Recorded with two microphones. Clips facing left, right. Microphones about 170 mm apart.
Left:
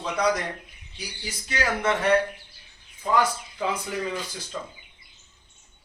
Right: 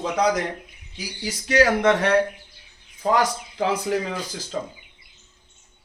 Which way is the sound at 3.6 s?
90° right.